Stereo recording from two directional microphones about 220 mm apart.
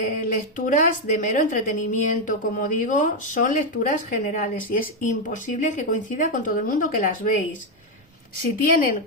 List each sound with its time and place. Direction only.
0.2 s a woman's voice: 35° left (ahead or behind)
8.5 s a woman's voice: 40° left (ahead or behind)